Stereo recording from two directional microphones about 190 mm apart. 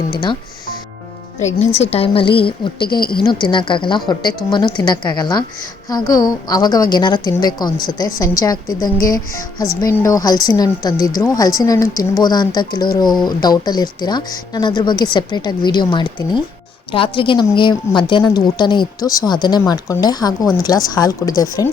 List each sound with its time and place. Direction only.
0.1 s a woman's voice: 25° left (ahead or behind)
1.4 s a woman's voice: 35° left (ahead or behind); by 21.4 s 20° left (ahead or behind)